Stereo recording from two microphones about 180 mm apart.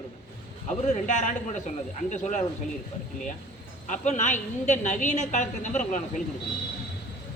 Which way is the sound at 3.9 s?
40° left (ahead or behind).